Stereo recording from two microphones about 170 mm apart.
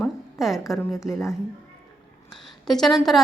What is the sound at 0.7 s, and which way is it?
Speech, centre (ahead or behind).